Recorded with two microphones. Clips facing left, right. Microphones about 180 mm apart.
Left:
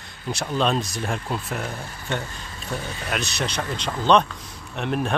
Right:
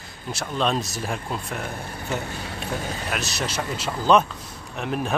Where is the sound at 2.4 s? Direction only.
70° right (ahead or behind).